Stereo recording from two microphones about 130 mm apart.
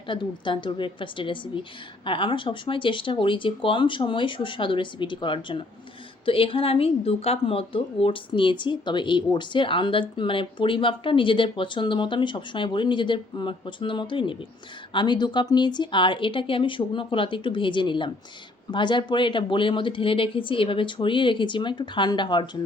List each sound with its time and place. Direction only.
0.1 s speech: 40° left (ahead or behind)